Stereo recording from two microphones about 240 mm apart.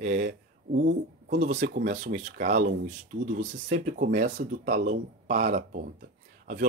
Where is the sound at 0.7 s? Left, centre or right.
Right.